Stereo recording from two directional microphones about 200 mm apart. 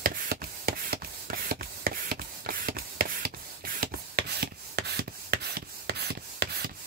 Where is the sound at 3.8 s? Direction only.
50° right (ahead or behind).